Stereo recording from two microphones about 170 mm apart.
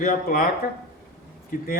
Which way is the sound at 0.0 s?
55° left (ahead or behind).